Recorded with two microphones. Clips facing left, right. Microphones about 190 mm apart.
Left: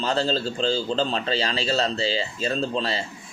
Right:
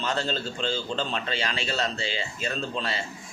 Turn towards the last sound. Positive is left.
turn(degrees=30)  # may be behind; listen again after turning